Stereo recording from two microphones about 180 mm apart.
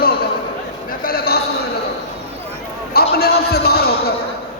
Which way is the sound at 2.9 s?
60° left (ahead or behind).